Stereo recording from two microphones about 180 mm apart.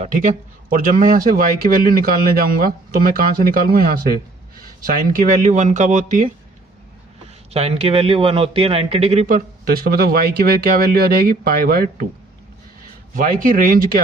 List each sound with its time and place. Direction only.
0.0 s speech: 45° right (ahead or behind)
7.5 s a man's voice: 35° right (ahead or behind)
9.2 s speech: 50° right (ahead or behind)
13.1 s speech: 50° right (ahead or behind)